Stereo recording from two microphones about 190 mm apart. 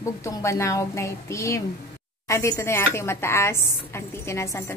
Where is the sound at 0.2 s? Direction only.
15° left (ahead or behind).